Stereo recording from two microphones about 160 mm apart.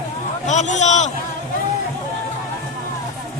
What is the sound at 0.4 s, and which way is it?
Speech, 50° left (ahead or behind).